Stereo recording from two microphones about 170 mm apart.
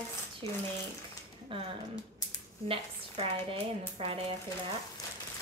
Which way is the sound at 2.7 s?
30° right (ahead or behind).